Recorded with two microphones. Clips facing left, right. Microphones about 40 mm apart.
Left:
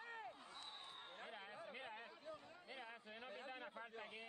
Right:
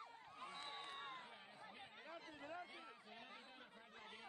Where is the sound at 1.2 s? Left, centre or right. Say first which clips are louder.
Left 4 dB; left.